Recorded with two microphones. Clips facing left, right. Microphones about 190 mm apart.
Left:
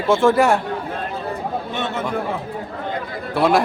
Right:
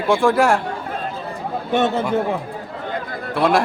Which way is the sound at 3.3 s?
Centre (ahead or behind).